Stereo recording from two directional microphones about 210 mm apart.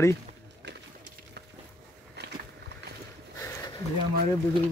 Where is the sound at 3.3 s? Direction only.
15° left (ahead or behind).